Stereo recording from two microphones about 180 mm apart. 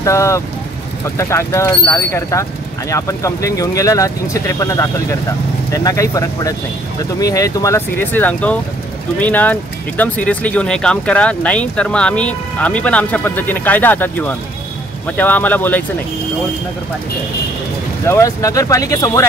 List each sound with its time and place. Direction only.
0.0 s speech: 15° left (ahead or behind)
18.0 s speech: 15° left (ahead or behind)